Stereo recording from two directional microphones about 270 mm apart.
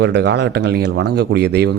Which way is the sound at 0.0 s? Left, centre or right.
Right.